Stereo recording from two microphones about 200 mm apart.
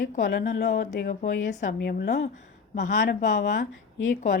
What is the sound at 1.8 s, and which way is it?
Speech, 55° left (ahead or behind).